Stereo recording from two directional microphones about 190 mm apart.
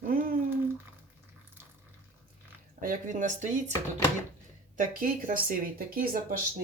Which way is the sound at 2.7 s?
45° right (ahead or behind).